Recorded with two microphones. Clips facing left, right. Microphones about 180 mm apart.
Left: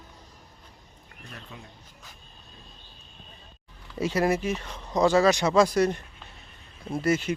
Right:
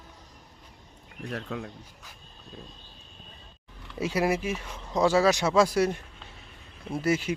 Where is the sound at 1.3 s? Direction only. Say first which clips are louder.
Right 11 dB; 80° right.